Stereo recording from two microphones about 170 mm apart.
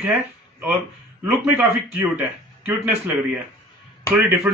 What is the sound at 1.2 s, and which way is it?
A man's voice, 10° right (ahead or behind).